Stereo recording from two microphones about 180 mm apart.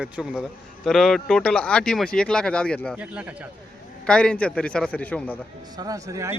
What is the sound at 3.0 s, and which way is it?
Speech, 5° right (ahead or behind).